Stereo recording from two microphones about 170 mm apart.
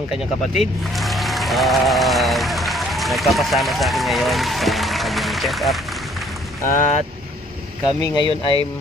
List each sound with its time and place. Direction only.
0.1 s speech: centre (ahead or behind)
6.7 s speech: 45° left (ahead or behind)
7.8 s a man's voice: 25° left (ahead or behind)